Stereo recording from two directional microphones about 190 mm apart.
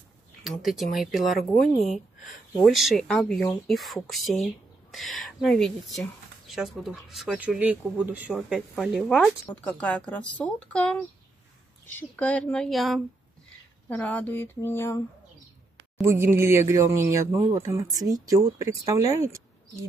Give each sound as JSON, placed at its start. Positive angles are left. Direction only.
{"t": 0.4, "sound": "speech", "side_deg": 0}
{"t": 2.6, "sound": "speech", "side_deg": 0}
{"t": 16.0, "sound": "speech", "side_deg": -10}